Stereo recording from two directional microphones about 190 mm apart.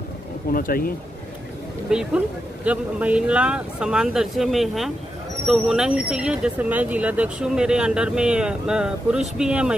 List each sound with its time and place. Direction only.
0.5 s speech: 50° left (ahead or behind)
1.9 s speech: 5° right (ahead or behind)